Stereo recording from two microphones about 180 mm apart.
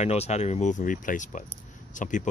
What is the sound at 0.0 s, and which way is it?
Speech, 35° left (ahead or behind).